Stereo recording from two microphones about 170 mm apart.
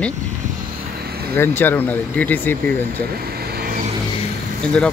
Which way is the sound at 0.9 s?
65° right (ahead or behind).